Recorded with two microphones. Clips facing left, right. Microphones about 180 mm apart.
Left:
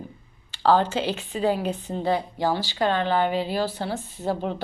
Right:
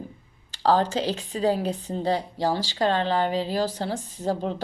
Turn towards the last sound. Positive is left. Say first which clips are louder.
# even
turn(degrees=-40)  # may be behind; listen again after turning